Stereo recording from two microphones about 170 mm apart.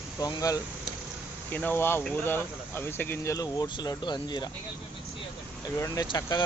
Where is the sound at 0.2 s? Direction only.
20° left (ahead or behind).